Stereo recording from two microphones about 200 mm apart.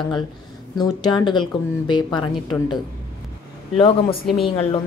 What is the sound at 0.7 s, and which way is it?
A woman's voice, 20° left (ahead or behind).